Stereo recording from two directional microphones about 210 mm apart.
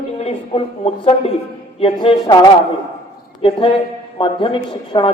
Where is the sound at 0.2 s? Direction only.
30° left (ahead or behind).